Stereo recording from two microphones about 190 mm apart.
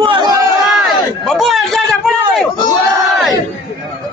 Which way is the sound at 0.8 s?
Centre (ahead or behind).